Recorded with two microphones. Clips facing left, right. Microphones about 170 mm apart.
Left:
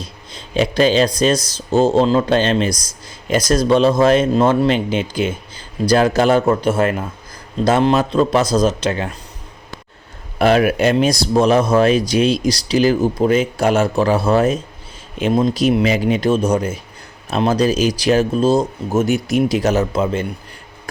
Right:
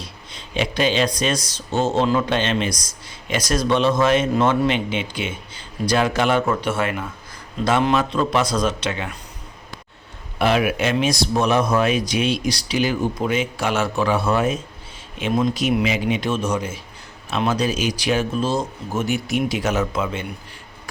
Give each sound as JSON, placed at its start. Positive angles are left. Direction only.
{"t": 0.3, "sound": "speech", "side_deg": 35}
{"t": 10.3, "sound": "speech", "side_deg": 40}